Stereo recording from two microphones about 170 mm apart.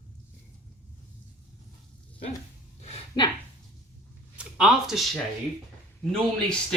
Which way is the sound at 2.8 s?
35° left (ahead or behind).